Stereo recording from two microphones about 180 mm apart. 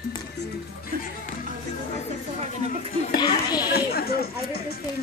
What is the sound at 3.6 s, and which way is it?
Chatter, 60° left (ahead or behind).